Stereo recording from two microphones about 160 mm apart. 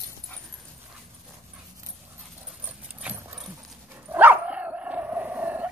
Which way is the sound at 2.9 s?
10° right (ahead or behind).